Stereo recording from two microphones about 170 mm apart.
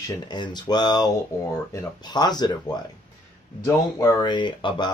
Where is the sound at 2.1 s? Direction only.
25° left (ahead or behind).